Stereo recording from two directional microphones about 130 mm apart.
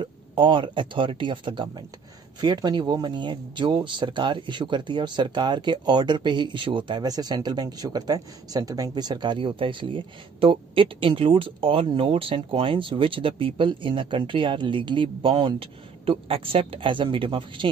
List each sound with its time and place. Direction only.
0.0 s speech: 40° right (ahead or behind)